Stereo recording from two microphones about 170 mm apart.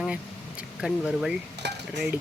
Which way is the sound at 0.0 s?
5° right (ahead or behind).